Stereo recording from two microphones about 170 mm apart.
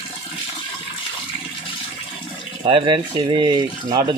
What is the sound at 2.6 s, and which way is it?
Speech, 30° right (ahead or behind).